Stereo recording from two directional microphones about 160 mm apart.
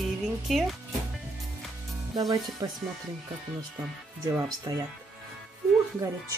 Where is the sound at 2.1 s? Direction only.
25° right (ahead or behind).